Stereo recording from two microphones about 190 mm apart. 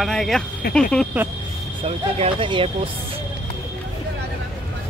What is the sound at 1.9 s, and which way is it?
Speech, 30° right (ahead or behind).